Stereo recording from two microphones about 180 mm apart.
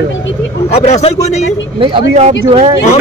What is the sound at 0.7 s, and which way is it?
Speech, 40° left (ahead or behind).